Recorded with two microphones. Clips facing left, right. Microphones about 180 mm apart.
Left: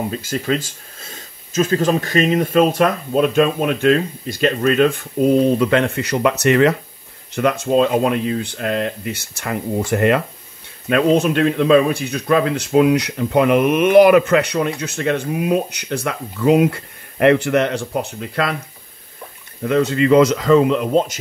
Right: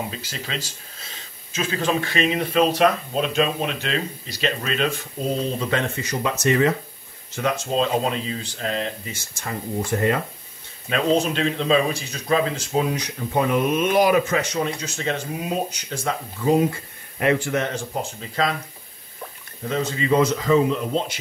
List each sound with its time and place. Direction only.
0.1 s speech: 50° left (ahead or behind)
5.6 s speech: 65° left (ahead or behind)
10.9 s speech: 60° left (ahead or behind)
19.7 s speech: 65° left (ahead or behind)